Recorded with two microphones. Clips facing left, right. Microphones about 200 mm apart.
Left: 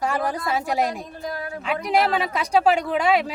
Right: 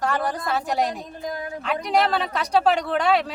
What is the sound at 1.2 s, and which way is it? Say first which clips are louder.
Speech: right 1 dB; 20° right (ahead or behind).